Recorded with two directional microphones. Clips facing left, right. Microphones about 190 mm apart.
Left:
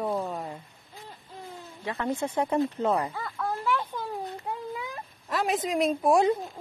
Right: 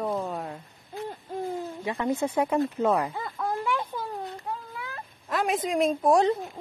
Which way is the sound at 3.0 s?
20° right (ahead or behind).